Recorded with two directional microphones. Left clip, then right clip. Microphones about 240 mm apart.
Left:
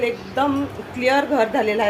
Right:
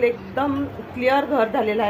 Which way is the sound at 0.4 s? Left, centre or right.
Centre.